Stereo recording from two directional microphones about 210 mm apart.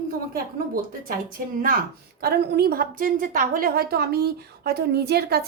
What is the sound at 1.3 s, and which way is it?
A woman's voice, 40° right (ahead or behind).